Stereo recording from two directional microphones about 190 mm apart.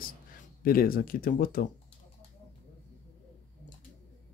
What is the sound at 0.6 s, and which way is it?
Speech, 50° left (ahead or behind).